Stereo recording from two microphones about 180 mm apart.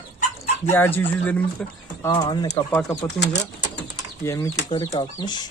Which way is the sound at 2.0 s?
25° left (ahead or behind).